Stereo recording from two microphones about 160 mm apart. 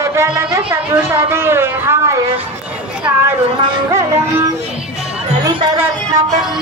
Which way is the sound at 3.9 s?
20° right (ahead or behind).